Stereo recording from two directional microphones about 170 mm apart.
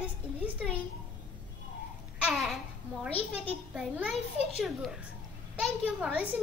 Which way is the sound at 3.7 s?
10° right (ahead or behind).